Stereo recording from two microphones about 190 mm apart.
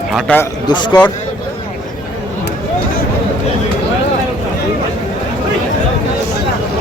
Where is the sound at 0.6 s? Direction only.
25° left (ahead or behind).